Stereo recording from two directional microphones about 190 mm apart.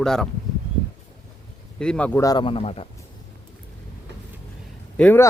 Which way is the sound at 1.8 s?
5° left (ahead or behind).